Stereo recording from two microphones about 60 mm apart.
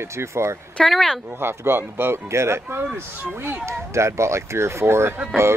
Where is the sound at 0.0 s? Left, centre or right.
Right.